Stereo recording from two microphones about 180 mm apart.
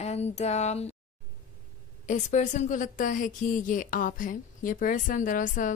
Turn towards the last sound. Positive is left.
turn(degrees=45)  # may be behind; listen again after turning